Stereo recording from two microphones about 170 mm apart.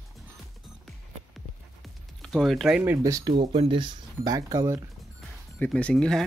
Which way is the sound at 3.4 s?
30° right (ahead or behind).